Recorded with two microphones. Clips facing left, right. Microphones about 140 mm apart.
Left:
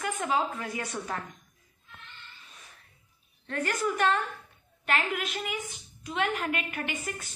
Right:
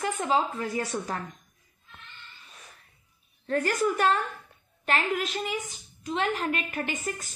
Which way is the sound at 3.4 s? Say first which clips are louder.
Right 4 dB; 35° right (ahead or behind).